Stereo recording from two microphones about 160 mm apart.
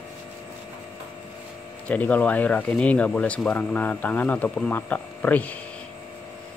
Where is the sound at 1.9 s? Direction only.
10° left (ahead or behind).